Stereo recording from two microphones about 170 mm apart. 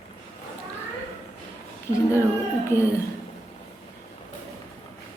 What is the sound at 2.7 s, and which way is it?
Speech, 15° left (ahead or behind).